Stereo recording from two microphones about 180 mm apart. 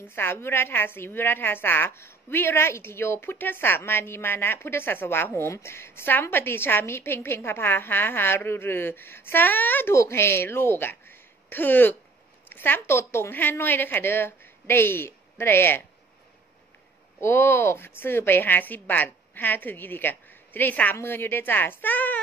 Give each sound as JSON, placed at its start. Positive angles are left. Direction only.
{"t": 0.1, "sound": "a woman's voice", "side_deg": 10}
{"t": 17.2, "sound": "a woman's voice", "side_deg": 15}